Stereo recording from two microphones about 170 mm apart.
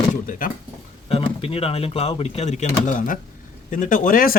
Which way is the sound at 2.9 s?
50° left (ahead or behind).